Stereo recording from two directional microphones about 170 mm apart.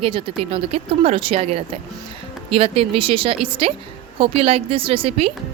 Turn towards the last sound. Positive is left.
turn(degrees=-35)  # may be behind; listen again after turning